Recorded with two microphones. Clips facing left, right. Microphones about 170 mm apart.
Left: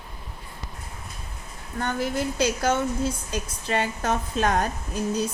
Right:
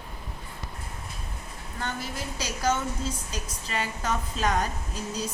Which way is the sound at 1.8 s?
55° left (ahead or behind).